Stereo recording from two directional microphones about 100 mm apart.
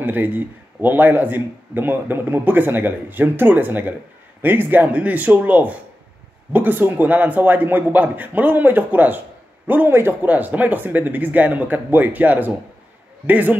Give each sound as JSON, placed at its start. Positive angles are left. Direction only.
{"t": 0.0, "sound": "speech", "side_deg": -15}